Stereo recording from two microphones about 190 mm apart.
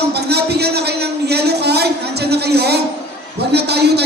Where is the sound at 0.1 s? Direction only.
60° right (ahead or behind).